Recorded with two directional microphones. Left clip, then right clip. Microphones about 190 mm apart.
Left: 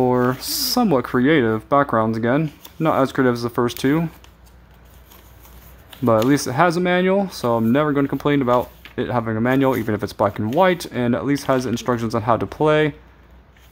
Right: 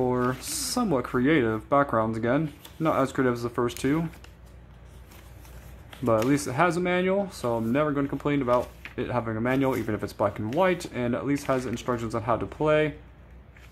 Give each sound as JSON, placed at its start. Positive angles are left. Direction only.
{"t": 0.0, "sound": "speech", "side_deg": 30}
{"t": 6.0, "sound": "speech", "side_deg": 25}